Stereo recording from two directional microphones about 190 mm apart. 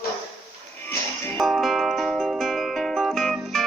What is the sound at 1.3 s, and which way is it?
Music, centre (ahead or behind).